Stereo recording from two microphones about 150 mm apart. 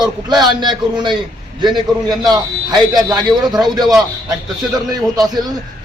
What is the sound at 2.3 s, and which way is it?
A man's voice, 25° right (ahead or behind).